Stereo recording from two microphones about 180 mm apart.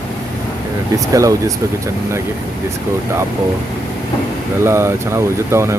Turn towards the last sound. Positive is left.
turn(degrees=-15)  # may be behind; listen again after turning